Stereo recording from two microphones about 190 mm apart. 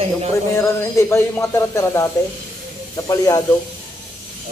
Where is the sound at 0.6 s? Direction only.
15° left (ahead or behind).